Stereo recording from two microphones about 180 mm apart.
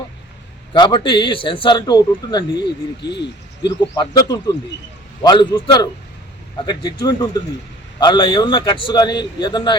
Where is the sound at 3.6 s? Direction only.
25° left (ahead or behind).